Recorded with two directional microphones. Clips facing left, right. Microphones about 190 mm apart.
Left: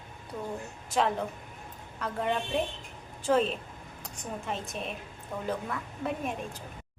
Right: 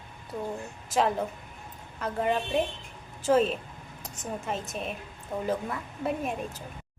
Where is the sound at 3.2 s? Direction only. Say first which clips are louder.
Right 3 dB; 5° right (ahead or behind).